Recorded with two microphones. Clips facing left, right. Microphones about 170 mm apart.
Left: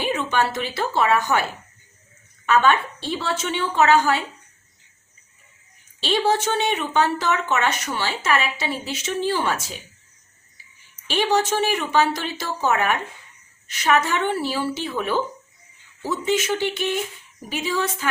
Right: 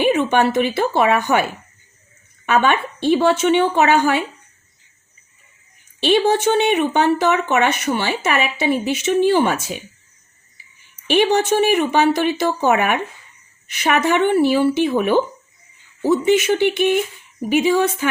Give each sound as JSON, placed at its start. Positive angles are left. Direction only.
{"t": 0.0, "sound": "speech", "side_deg": -60}
{"t": 2.5, "sound": "speech", "side_deg": -60}
{"t": 6.0, "sound": "speech", "side_deg": -60}
{"t": 11.0, "sound": "a woman's voice", "side_deg": -60}
{"t": 16.3, "sound": "speech", "side_deg": -60}